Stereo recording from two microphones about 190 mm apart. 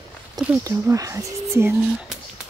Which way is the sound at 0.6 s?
15° right (ahead or behind).